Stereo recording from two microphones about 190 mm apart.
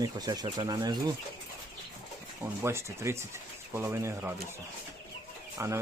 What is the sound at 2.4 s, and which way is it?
Speech, 15° right (ahead or behind).